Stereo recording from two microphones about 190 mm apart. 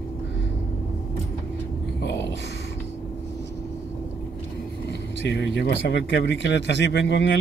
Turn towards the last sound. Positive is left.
turn(degrees=70)  # may be behind; listen again after turning